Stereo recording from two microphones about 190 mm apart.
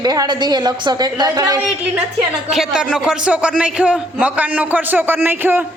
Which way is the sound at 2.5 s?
Centre (ahead or behind).